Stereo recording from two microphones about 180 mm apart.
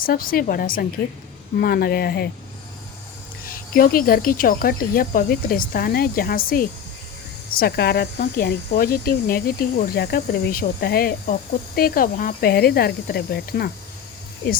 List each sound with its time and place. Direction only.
0.0 s speech: 50° left (ahead or behind)
3.4 s speech: 50° left (ahead or behind)